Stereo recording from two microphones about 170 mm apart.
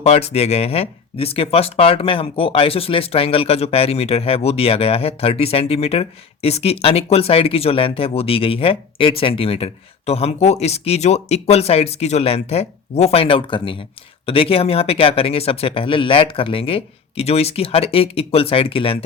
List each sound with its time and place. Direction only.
0.0 s speech: 40° left (ahead or behind)